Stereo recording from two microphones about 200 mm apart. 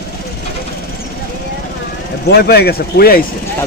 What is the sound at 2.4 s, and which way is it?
Speech, 50° left (ahead or behind).